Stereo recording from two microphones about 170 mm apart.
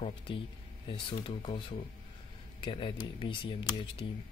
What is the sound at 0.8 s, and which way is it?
Speech, 30° left (ahead or behind).